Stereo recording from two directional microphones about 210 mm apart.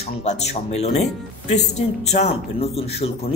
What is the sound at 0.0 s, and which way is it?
Speech, 30° left (ahead or behind).